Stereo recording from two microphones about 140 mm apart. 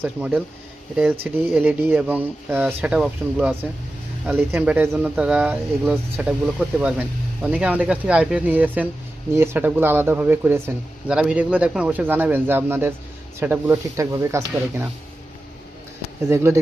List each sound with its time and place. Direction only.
0.0 s speech: 10° right (ahead or behind)
16.3 s speech: 20° right (ahead or behind)